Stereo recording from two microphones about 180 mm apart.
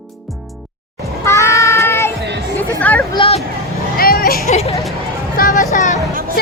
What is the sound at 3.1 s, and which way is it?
Speech, 30° left (ahead or behind).